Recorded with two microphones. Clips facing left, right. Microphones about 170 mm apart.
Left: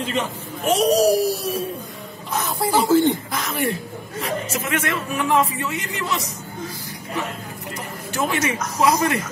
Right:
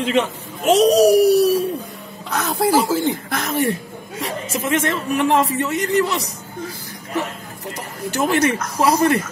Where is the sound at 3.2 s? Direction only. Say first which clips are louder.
Right 4 dB; 50° right (ahead or behind).